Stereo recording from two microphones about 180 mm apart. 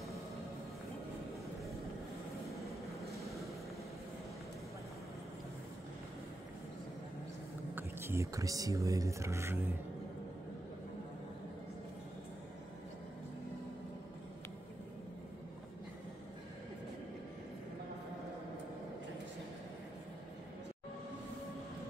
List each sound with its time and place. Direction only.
3.2 s vehicle: centre (ahead or behind)
7.7 s speech: 15° right (ahead or behind)